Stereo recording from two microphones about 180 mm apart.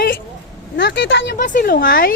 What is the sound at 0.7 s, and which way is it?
Speech, 80° left.